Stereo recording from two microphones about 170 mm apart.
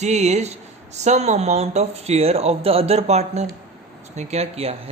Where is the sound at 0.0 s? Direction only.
40° right (ahead or behind).